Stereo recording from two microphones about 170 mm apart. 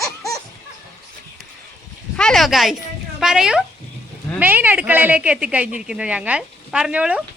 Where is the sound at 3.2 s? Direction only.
5° right (ahead or behind).